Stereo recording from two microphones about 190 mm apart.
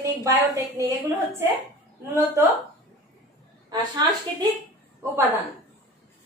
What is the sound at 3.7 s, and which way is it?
Speech, 20° right (ahead or behind).